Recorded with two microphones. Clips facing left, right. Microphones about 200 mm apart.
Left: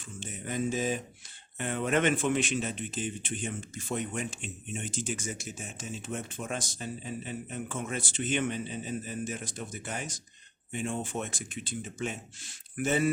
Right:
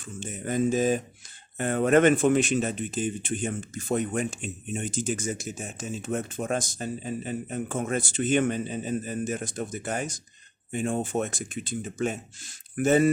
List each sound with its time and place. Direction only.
0.0 s speech: 45° right (ahead or behind)